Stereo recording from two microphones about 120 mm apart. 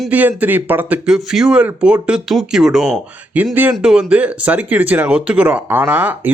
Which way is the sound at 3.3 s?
15° right (ahead or behind).